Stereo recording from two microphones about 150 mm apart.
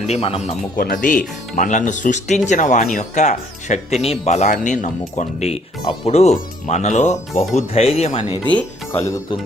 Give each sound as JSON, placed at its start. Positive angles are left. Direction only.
{"t": 0.1, "sound": "speech", "side_deg": 40}
{"t": 0.8, "sound": "speech", "side_deg": 65}
{"t": 8.5, "sound": "speech", "side_deg": 15}